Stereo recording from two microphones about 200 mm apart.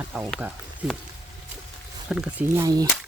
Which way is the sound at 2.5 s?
15° right (ahead or behind).